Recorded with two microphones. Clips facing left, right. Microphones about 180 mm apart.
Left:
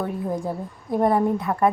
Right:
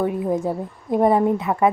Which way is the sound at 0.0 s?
20° right (ahead or behind).